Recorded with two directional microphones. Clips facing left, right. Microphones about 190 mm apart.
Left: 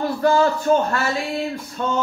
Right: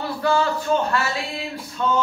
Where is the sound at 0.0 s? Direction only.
45° left (ahead or behind).